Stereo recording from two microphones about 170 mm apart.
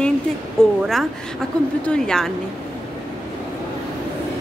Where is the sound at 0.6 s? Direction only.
5° left (ahead or behind).